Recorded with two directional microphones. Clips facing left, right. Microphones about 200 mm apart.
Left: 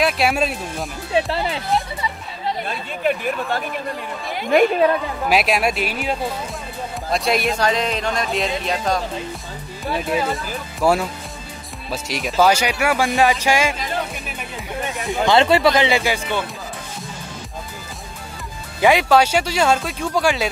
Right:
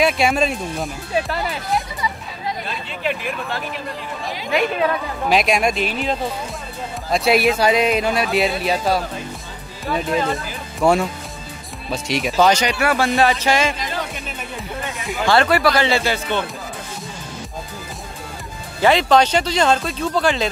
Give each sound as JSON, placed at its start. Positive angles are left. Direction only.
{"t": 0.0, "sound": "speech", "side_deg": 5}
{"t": 1.1, "sound": "speech", "side_deg": 25}
{"t": 3.0, "sound": "speech", "side_deg": 45}
{"t": 5.2, "sound": "speech", "side_deg": 5}
{"t": 9.9, "sound": "speech", "side_deg": 5}
{"t": 15.1, "sound": "speech", "side_deg": 20}
{"t": 18.8, "sound": "speech", "side_deg": 10}